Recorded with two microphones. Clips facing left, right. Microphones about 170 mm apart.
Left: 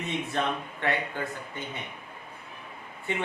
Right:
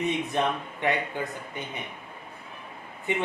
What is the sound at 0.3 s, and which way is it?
Speech, 15° right (ahead or behind).